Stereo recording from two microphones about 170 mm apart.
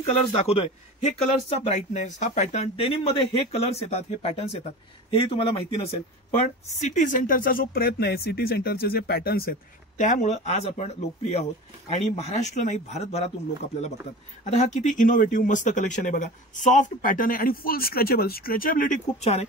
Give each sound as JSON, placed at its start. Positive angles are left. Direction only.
{"t": 0.0, "sound": "speech", "side_deg": 35}
{"t": 6.8, "sound": "speech", "side_deg": 45}
{"t": 14.4, "sound": "speech", "side_deg": 40}